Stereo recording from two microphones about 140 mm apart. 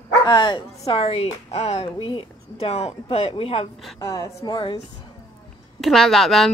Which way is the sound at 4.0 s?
25° left (ahead or behind).